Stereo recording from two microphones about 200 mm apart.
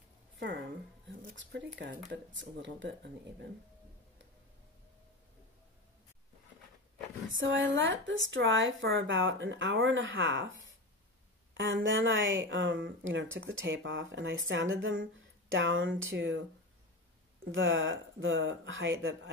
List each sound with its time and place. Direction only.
1.3 s speech: 65° right (ahead or behind)
7.2 s speech: 70° right (ahead or behind)
11.5 s speech: 70° right (ahead or behind)
17.5 s speech: 70° right (ahead or behind)